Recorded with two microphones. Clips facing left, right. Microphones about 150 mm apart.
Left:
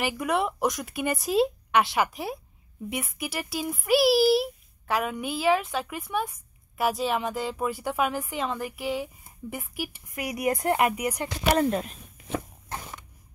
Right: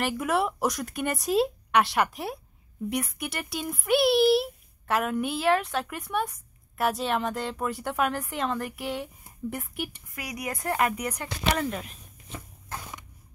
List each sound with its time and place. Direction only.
0.0 s a child's voice: centre (ahead or behind)
10.1 s speech: 25° left (ahead or behind)
11.5 s speech: 40° left (ahead or behind)